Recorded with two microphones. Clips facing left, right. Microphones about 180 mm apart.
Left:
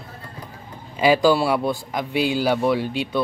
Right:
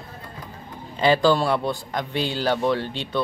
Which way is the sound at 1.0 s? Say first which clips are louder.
Left 2 dB; 10° left (ahead or behind).